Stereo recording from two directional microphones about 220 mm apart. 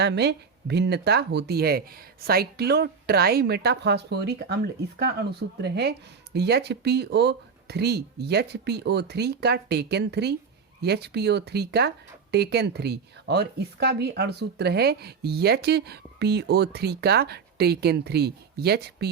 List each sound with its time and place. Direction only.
0.0 s speech: 50° right (ahead or behind)